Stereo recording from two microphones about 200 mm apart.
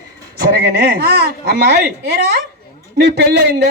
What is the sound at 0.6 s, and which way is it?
A woman's voice, 55° right (ahead or behind).